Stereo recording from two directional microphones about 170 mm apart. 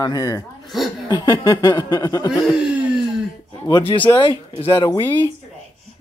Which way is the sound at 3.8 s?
30° left (ahead or behind).